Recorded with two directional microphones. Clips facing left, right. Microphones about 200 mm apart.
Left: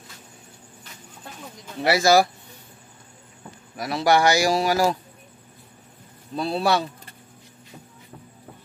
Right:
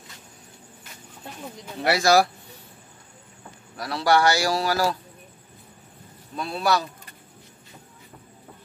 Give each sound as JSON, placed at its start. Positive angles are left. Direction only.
{"t": 1.8, "sound": "speech", "side_deg": 0}
{"t": 3.7, "sound": "a man's voice", "side_deg": 20}
{"t": 6.3, "sound": "speech", "side_deg": 30}